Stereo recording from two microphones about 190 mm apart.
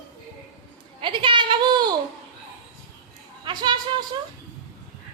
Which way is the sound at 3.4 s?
20° right (ahead or behind).